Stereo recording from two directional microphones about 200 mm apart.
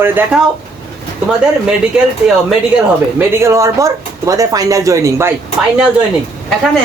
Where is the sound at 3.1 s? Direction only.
15° right (ahead or behind).